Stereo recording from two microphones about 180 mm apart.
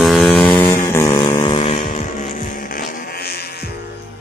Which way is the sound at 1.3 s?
25° left (ahead or behind).